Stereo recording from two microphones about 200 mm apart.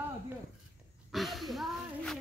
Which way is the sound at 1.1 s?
Centre (ahead or behind).